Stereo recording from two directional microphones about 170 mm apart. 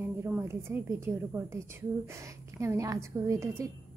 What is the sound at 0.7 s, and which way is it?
Speech, 15° right (ahead or behind).